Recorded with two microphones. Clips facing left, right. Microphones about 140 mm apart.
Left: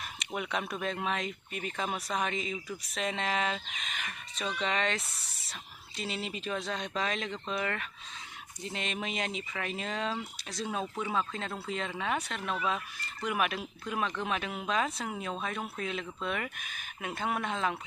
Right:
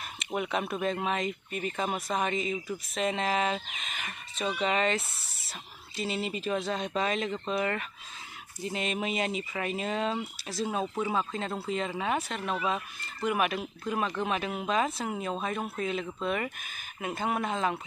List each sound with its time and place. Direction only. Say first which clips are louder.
0.2 s speech: right 4 dB; centre (ahead or behind)